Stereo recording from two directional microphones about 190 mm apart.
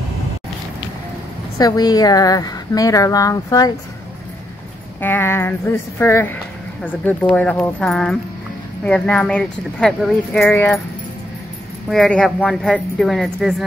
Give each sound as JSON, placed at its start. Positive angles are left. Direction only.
{"t": 1.6, "sound": "a woman's voice", "side_deg": 20}
{"t": 5.0, "sound": "speech", "side_deg": 10}
{"t": 11.9, "sound": "speech", "side_deg": 0}